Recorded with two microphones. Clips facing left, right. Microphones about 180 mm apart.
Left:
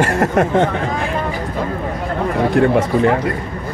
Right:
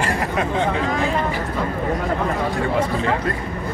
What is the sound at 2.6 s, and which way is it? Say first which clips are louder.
Speech: left 10 dB; 65° left (ahead or behind).